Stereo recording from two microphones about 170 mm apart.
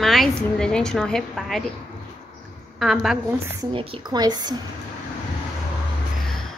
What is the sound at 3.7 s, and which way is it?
Speech, 25° right (ahead or behind).